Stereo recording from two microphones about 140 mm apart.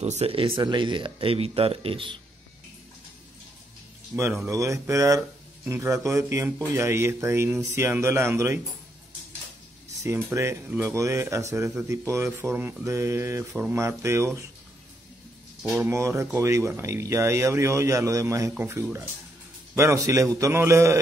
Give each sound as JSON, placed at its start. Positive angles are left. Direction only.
{"t": 0.0, "sound": "speech", "side_deg": -50}
{"t": 4.1, "sound": "speech", "side_deg": -10}
{"t": 10.0, "sound": "speech", "side_deg": -20}
{"t": 15.9, "sound": "speech", "side_deg": -20}